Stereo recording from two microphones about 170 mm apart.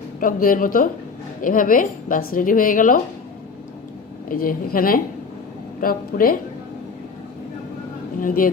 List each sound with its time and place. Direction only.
0.2 s a woman's voice: 55° left (ahead or behind)
4.3 s a woman's voice: 55° left (ahead or behind)
8.2 s a woman's voice: 55° left (ahead or behind)